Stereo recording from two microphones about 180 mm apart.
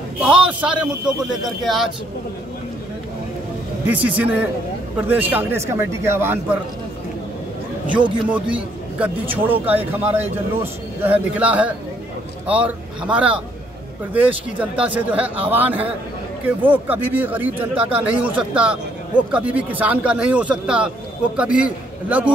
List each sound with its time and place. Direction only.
0.2 s speech: 5° right (ahead or behind)
3.8 s speech: 10° right (ahead or behind)
8.3 s speech: 5° right (ahead or behind)